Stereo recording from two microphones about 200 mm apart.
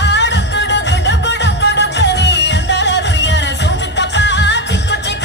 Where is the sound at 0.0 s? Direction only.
60° left (ahead or behind).